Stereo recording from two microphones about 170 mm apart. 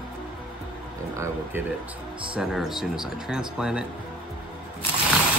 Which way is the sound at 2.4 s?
5° right (ahead or behind).